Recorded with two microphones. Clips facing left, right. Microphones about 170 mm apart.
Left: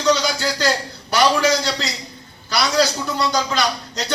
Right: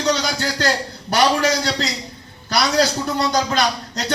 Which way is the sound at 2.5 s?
55° right (ahead or behind).